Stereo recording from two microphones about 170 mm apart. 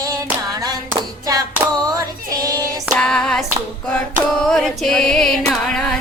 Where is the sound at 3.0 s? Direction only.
5° left (ahead or behind).